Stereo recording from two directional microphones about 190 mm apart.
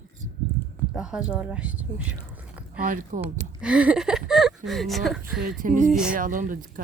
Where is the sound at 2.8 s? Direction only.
45° right (ahead or behind).